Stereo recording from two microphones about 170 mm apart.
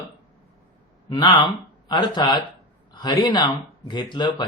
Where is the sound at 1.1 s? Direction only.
25° left (ahead or behind).